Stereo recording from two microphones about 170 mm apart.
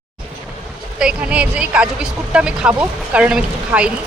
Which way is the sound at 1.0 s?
5° right (ahead or behind).